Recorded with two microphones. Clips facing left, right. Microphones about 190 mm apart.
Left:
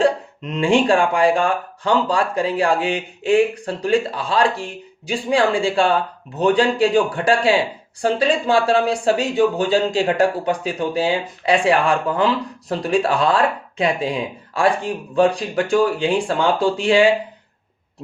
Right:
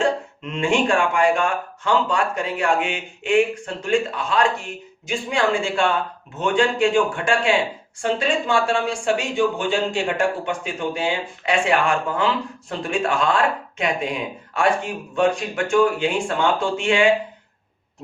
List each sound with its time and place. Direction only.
0.0 s speech: 35° left (ahead or behind)